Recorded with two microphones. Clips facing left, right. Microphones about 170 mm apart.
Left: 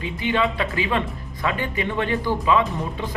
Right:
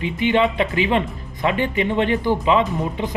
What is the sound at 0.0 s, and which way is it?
Speech, 20° right (ahead or behind).